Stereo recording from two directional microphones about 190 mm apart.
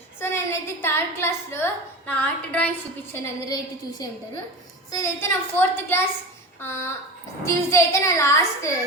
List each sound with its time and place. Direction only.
0.2 s a woman's voice: 10° left (ahead or behind)
3.1 s a woman's voice: 20° left (ahead or behind)